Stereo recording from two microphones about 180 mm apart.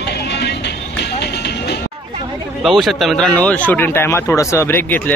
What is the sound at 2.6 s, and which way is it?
Speech, centre (ahead or behind).